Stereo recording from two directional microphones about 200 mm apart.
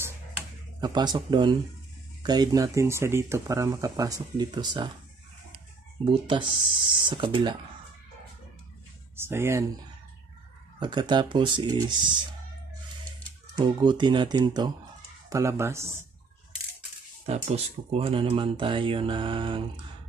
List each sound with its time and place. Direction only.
0.7 s speech: 20° right (ahead or behind)
6.0 s speech: 25° right (ahead or behind)
9.1 s speech: 10° right (ahead or behind)
10.8 s speech: 20° right (ahead or behind)
13.6 s speech: 20° right (ahead or behind)
17.3 s speech: 30° right (ahead or behind)